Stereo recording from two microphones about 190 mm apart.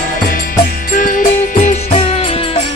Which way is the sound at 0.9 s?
45° left (ahead or behind).